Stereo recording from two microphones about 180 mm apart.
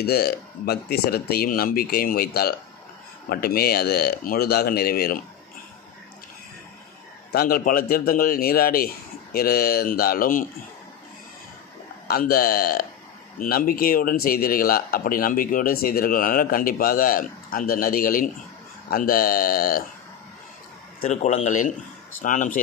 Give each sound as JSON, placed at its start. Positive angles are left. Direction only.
{"t": 0.0, "sound": "a man's voice", "side_deg": 60}
{"t": 7.3, "sound": "a man's voice", "side_deg": 55}
{"t": 12.1, "sound": "a man's voice", "side_deg": 55}
{"t": 21.0, "sound": "a man's voice", "side_deg": 40}